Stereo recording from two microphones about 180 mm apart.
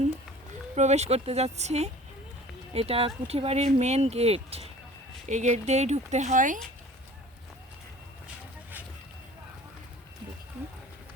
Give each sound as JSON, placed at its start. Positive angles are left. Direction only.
{"t": 0.8, "sound": "speech", "side_deg": -40}